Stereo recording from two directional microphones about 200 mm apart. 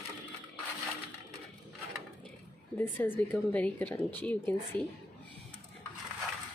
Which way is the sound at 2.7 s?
10° left (ahead or behind).